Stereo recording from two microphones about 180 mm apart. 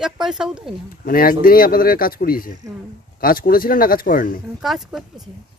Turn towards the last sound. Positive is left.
turn(degrees=0)  # may be behind; listen again after turning